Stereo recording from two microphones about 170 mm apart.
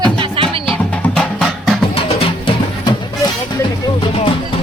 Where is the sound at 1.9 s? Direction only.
35° left (ahead or behind).